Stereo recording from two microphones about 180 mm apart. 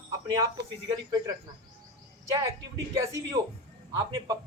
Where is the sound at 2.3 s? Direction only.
20° right (ahead or behind).